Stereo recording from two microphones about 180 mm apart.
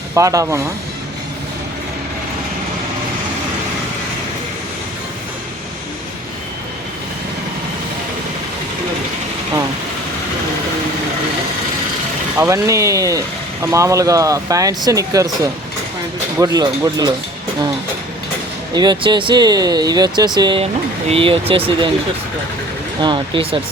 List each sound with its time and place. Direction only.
0.1 s speech: 15° right (ahead or behind)
12.4 s speech: 15° right (ahead or behind)
16.4 s speech: 20° right (ahead or behind)
18.7 s speech: 25° right (ahead or behind)
23.0 s speech: 25° right (ahead or behind)